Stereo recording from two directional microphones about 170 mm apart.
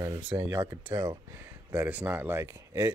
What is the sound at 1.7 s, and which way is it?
Speech, 10° right (ahead or behind).